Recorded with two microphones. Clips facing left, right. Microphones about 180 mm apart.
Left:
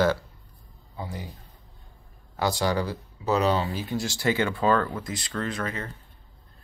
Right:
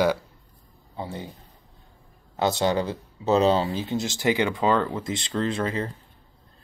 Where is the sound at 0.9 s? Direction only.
25° right (ahead or behind).